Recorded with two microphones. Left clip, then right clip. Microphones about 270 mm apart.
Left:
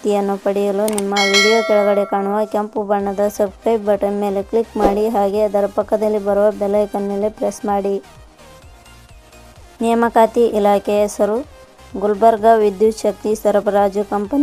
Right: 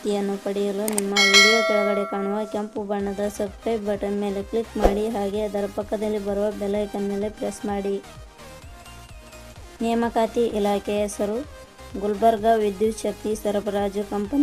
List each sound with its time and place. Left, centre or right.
0.1 s speech: centre
0.9 s speech: centre
2.1 s speech: centre
9.8 s speech: centre